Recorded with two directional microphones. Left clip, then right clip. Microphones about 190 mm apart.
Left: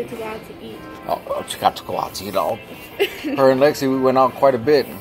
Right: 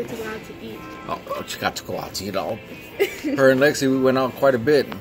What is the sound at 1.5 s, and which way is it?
Speech, 40° right (ahead or behind).